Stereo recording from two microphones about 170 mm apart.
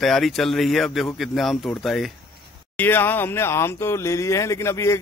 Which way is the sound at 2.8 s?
10° left (ahead or behind).